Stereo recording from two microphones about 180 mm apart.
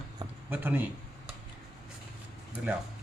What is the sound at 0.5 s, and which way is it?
Speech, 10° right (ahead or behind).